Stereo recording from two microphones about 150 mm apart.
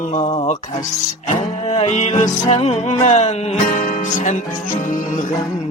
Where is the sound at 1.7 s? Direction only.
45° left (ahead or behind).